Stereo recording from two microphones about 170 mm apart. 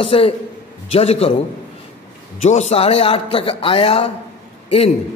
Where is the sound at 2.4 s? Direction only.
40° left (ahead or behind).